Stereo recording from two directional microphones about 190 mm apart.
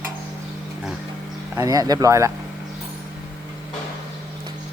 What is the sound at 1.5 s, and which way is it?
Speech, 15° right (ahead or behind).